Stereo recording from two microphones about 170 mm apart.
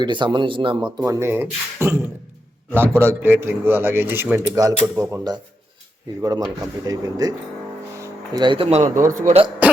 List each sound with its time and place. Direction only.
0.0 s speech: 25° right (ahead or behind)
0.9 s speech: 20° right (ahead or behind)
3.0 s a man's voice: 15° right (ahead or behind); by 9.4 s 45° right (ahead or behind)